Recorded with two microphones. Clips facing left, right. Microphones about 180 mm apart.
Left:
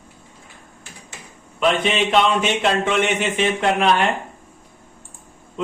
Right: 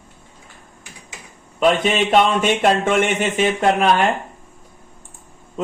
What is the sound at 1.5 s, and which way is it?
Speech, 45° right (ahead or behind).